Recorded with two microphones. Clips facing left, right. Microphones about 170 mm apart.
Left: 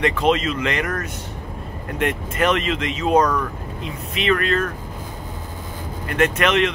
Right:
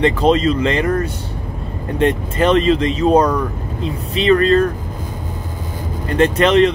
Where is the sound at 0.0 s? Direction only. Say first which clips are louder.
Right 5 dB; 35° right (ahead or behind).